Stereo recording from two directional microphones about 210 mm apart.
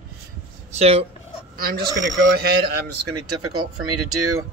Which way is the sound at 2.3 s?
50° right (ahead or behind).